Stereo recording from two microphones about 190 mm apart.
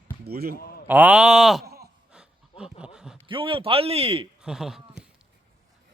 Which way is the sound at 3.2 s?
25° right (ahead or behind).